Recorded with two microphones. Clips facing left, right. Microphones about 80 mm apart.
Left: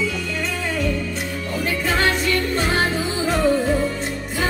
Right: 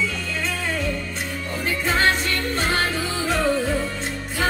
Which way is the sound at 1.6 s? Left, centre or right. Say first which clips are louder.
Even; right.